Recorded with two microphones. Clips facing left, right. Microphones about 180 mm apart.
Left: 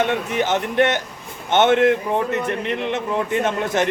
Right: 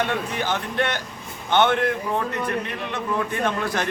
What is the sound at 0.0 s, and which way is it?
A man's voice, 20° left (ahead or behind).